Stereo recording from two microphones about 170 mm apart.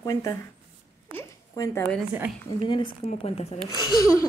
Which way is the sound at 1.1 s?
20° left (ahead or behind).